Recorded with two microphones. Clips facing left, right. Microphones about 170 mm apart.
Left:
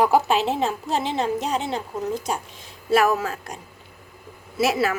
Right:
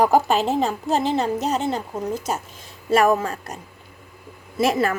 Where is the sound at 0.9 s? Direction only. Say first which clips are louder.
Right 4 dB; 40° right (ahead or behind).